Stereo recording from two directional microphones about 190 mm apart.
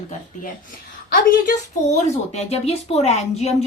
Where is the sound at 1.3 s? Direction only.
45° left (ahead or behind).